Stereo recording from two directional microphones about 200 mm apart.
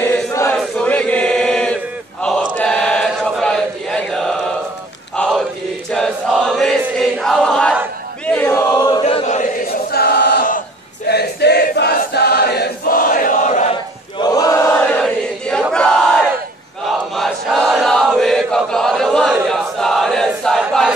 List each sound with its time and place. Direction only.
0.0 s chant: 10° left (ahead or behind)
7.0 s choir: centre (ahead or behind)
8.3 s a sound: 10° left (ahead or behind)
9.0 s chant: 35° left (ahead or behind)
14.2 s chant: 20° left (ahead or behind)
15.6 s battle cry: 5° left (ahead or behind)
16.8 s crowd: centre (ahead or behind)